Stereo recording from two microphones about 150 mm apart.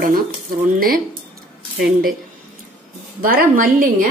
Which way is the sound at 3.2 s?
70° right (ahead or behind).